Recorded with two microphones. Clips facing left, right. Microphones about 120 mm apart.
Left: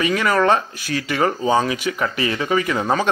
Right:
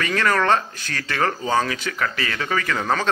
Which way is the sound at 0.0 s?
15° left (ahead or behind).